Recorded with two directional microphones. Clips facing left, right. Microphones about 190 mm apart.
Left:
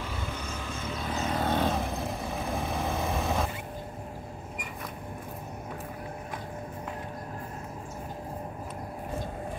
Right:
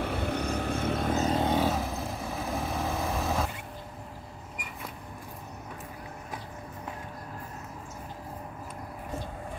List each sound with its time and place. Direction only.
0.0 s vehicle: 65° right (ahead or behind)
1.4 s vehicle: 10° right (ahead or behind)